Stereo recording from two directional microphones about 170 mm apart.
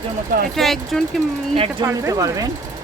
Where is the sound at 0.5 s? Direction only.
Centre (ahead or behind).